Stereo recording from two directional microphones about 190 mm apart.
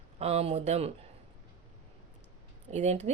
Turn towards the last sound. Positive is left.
turn(degrees=-35)  # may be behind; listen again after turning